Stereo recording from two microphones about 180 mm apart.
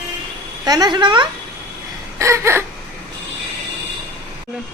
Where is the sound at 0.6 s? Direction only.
20° right (ahead or behind).